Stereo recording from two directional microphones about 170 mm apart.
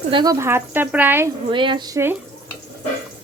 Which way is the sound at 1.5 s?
30° right (ahead or behind).